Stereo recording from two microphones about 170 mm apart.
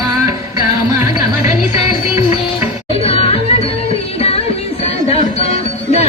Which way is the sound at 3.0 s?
35° left (ahead or behind).